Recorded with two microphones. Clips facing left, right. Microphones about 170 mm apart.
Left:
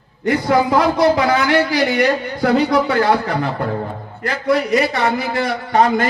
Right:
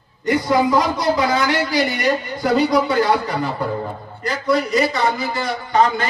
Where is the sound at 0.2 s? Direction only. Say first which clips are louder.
Left 1 dB; 65° left (ahead or behind).